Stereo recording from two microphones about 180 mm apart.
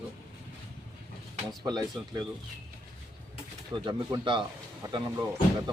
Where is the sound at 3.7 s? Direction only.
25° right (ahead or behind).